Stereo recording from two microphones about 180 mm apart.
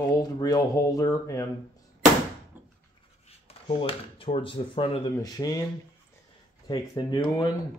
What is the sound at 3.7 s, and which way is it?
Speech, 30° left (ahead or behind).